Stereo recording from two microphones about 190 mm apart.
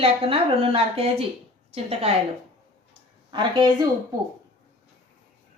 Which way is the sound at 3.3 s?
25° right (ahead or behind).